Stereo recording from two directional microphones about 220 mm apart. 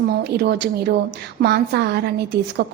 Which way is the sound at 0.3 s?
50° right (ahead or behind).